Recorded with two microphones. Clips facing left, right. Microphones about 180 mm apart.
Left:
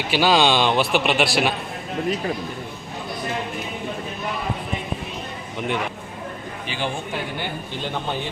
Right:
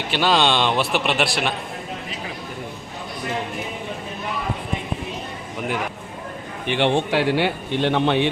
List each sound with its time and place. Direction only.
0.1 s a man's voice: 5° left (ahead or behind)
6.7 s speech: 75° right (ahead or behind)